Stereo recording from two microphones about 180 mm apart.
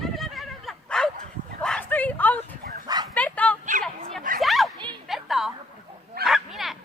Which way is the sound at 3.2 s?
10° left (ahead or behind).